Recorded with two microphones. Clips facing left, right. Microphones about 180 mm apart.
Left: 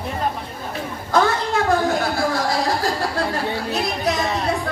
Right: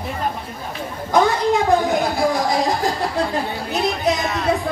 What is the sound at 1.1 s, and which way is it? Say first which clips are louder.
A woman's voice: right 3 dB; 15° right (ahead or behind).